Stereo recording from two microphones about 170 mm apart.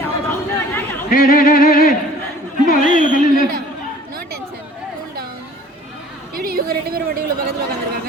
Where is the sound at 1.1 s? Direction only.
55° left (ahead or behind).